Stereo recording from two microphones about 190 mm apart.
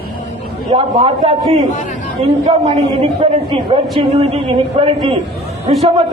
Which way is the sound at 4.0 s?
35° right (ahead or behind).